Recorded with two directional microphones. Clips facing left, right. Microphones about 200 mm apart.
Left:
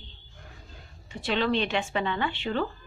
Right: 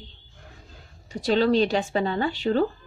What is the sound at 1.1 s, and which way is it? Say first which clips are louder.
A woman's voice: right 6 dB; 40° right (ahead or behind).